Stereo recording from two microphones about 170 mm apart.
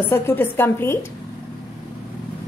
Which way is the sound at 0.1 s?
15° left (ahead or behind).